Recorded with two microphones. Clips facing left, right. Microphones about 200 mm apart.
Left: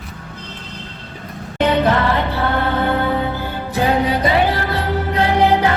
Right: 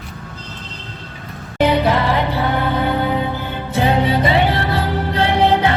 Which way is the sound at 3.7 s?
25° right (ahead or behind).